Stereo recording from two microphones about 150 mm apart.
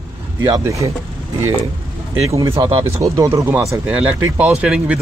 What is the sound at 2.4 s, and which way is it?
Speech, 35° right (ahead or behind).